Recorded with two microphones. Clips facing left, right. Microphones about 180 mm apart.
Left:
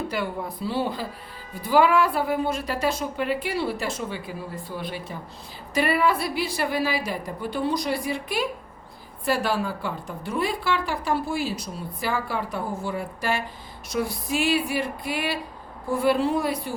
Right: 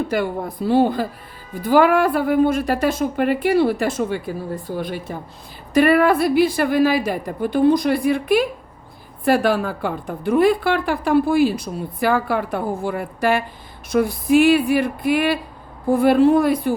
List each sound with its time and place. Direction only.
0.1 s a woman's voice: 50° right (ahead or behind)